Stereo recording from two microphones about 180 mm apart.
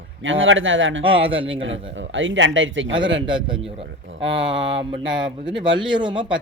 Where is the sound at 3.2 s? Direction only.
25° right (ahead or behind).